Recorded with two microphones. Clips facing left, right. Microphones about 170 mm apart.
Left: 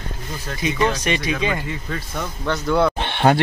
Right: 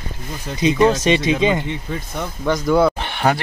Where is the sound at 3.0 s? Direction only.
25° left (ahead or behind).